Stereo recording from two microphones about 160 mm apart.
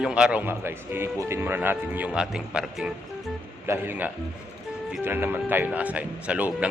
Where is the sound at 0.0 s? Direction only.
5° right (ahead or behind).